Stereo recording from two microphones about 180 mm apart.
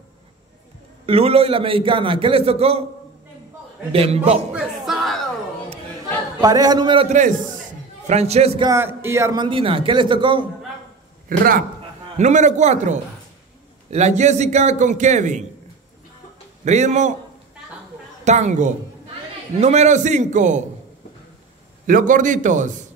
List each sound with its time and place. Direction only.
1.0 s a man's voice: 30° right (ahead or behind)
3.9 s a man's voice: 35° right (ahead or behind)
4.5 s battle cry: 5° right (ahead or behind)
6.4 s a man's voice: 20° right (ahead or behind)
7.1 s a man's voice: 45° right (ahead or behind)
8.6 s a man's voice: 15° right (ahead or behind)
11.2 s a man's voice: 50° right (ahead or behind)
16.6 s a man's voice: 40° right (ahead or behind)
18.2 s a man's voice: 40° right (ahead or behind)
21.8 s a man's voice: 50° right (ahead or behind)